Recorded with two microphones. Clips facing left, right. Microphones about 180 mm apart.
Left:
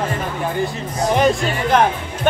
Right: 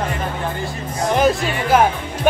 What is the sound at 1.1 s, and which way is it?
Speech, centre (ahead or behind).